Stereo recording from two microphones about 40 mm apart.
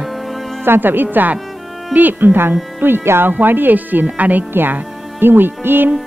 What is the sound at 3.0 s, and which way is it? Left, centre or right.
Speech, right.